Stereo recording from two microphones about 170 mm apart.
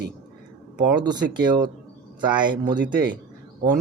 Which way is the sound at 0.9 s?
25° right (ahead or behind).